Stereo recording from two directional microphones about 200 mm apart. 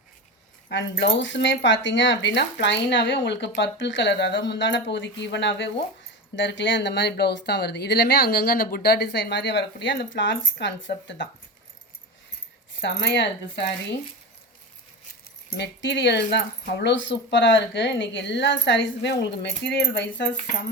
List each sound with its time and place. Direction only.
0.7 s speech: 60° left (ahead or behind)
12.8 s speech: 65° left (ahead or behind)
15.4 s speech: 55° left (ahead or behind)